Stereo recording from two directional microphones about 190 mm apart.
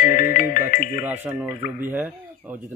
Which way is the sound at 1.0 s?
10° right (ahead or behind).